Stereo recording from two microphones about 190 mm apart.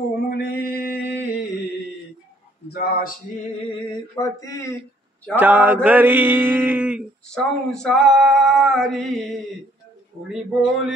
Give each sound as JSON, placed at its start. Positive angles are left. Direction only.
{"t": 0.3, "sound": "mantra", "side_deg": 55}
{"t": 2.7, "sound": "a man's voice", "side_deg": 55}
{"t": 4.1, "sound": "mantra", "side_deg": 15}
{"t": 5.3, "sound": "mantra", "side_deg": -10}
{"t": 7.2, "sound": "a sound", "side_deg": 5}